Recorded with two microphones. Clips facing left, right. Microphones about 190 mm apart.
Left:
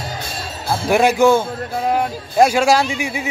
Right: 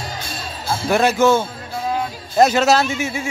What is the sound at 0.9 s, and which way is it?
Speech, 15° left (ahead or behind).